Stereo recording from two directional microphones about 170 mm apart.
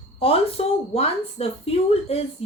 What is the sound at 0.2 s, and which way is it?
A woman's voice, 35° left (ahead or behind).